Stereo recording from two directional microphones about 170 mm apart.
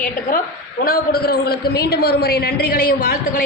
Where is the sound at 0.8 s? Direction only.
65° left (ahead or behind).